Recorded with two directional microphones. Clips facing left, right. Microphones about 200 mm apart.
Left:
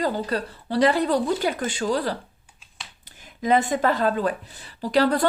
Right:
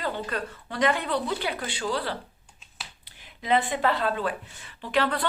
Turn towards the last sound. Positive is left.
turn(degrees=40)  # may be behind; listen again after turning